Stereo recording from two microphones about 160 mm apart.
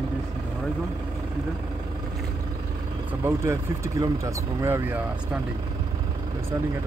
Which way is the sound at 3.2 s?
15° right (ahead or behind).